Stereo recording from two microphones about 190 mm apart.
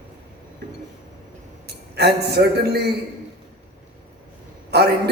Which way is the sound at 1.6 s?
60° right (ahead or behind).